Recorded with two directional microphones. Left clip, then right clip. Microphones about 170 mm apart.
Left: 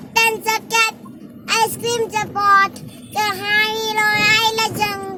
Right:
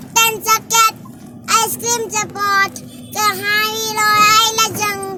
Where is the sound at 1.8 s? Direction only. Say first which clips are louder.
Right 1 dB; 10° left (ahead or behind).